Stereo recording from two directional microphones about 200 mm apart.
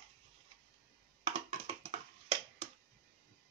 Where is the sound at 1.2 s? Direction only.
30° right (ahead or behind).